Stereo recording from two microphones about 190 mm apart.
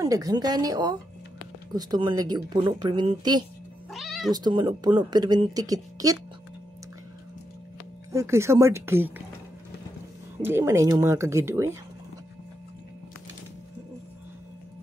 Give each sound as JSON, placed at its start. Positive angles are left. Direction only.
{"t": 0.0, "sound": "speech", "side_deg": -20}
{"t": 3.9, "sound": "cat", "side_deg": 0}
{"t": 4.3, "sound": "speech", "side_deg": -20}
{"t": 8.1, "sound": "speech", "side_deg": -15}
{"t": 10.4, "sound": "speech", "side_deg": -15}